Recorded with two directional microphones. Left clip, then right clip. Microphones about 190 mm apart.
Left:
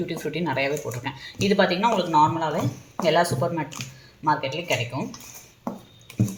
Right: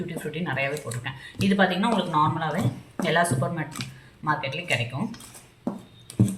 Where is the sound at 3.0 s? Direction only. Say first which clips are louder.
Left 3 dB; 35° left (ahead or behind).